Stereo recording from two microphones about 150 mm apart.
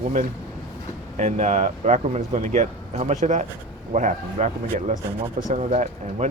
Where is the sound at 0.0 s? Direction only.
55° right (ahead or behind).